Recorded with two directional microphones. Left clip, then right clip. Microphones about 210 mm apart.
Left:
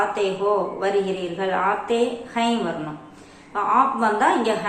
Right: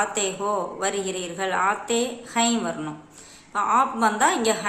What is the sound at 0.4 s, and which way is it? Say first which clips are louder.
A woman's voice: left 4 dB; 30° right (ahead or behind).